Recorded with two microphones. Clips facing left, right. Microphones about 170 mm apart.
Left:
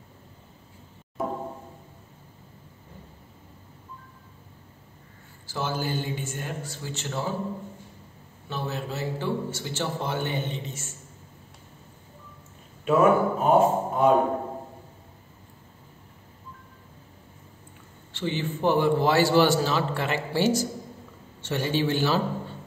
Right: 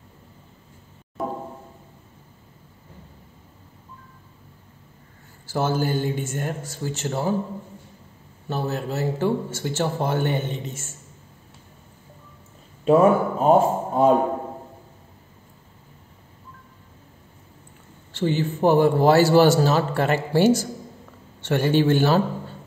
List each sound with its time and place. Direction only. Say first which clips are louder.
5.5 s a man's voice: right 6 dB; 45° right (ahead or behind)
8.5 s a man's voice: right 5 dB; 45° right (ahead or behind)
12.8 s a man's voice: right 3 dB; 35° right (ahead or behind)
18.1 s a man's voice: right 6 dB; 45° right (ahead or behind)